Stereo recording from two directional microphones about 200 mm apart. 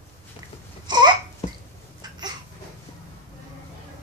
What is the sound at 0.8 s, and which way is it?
Babbling, 20° right (ahead or behind).